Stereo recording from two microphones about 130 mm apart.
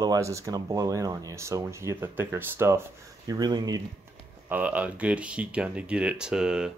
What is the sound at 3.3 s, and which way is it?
Speech, 30° right (ahead or behind).